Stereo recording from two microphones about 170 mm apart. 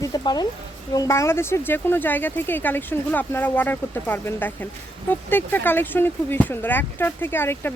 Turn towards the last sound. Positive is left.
turn(degrees=10)  # may be behind; listen again after turning